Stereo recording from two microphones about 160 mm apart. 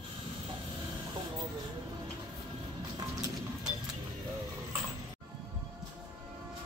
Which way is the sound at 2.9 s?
25° right (ahead or behind).